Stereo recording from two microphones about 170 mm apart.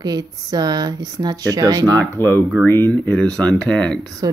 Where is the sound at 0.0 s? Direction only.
25° right (ahead or behind).